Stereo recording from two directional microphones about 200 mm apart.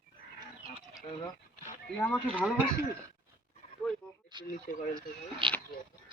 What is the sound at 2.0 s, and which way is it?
Speech, 5° left (ahead or behind).